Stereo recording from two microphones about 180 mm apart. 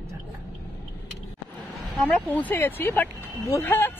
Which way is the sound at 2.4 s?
10° left (ahead or behind).